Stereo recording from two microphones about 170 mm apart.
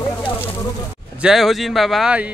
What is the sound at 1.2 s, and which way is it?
Speech, centre (ahead or behind).